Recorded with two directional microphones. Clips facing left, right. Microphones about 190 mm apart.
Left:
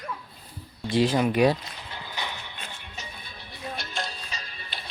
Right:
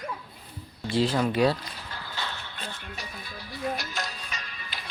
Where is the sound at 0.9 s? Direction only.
15° left (ahead or behind).